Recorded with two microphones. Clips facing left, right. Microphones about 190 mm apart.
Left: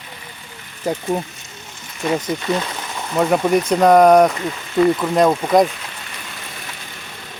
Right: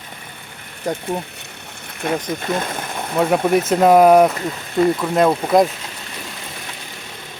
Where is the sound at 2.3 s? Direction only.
50° right (ahead or behind).